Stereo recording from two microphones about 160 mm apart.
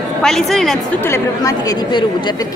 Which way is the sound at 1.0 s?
20° left (ahead or behind).